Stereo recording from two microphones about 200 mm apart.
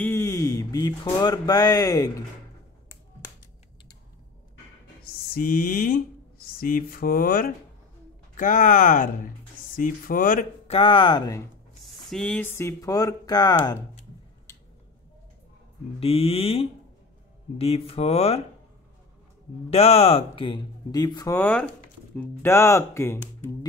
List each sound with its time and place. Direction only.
0.0 s a sound: 15° left (ahead or behind)
1.0 s speech: 20° left (ahead or behind)
5.0 s speech: 50° left (ahead or behind)
10.7 s speech: 25° left (ahead or behind)
11.8 s speech: centre (ahead or behind); by 13.7 s 20° left (ahead or behind)
16.0 s speech: 30° left (ahead or behind)
19.7 s speech: 30° left (ahead or behind); by 23.5 s 15° left (ahead or behind)